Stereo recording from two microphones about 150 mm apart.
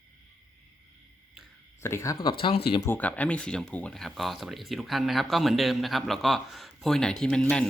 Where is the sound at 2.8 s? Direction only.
15° left (ahead or behind).